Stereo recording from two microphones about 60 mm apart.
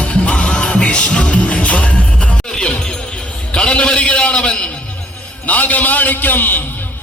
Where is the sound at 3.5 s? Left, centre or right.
Centre.